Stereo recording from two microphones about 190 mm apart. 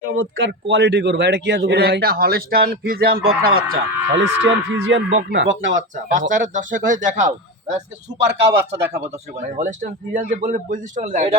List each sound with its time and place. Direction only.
0.2 s a man's voice: 80° right; by 3.5 s 55° right (ahead or behind)
3.5 s speech: 85° right
6.1 s a man's voice: 45° right (ahead or behind)
8.2 s a man's voice: 65° right (ahead or behind)
8.5 s a man's voice: 15° right (ahead or behind)
9.6 s a man's voice: 40° right (ahead or behind)